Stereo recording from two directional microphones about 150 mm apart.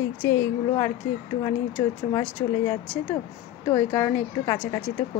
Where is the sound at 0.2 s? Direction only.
15° left (ahead or behind).